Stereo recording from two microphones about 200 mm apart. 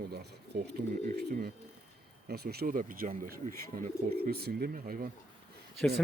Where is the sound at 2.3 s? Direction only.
50° right (ahead or behind).